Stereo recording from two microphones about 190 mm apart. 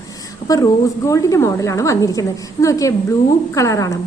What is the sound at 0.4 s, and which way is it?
A woman's voice, 15° left (ahead or behind).